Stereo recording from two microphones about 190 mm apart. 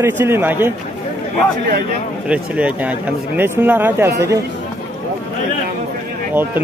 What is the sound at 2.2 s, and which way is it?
Speech, 5° right (ahead or behind).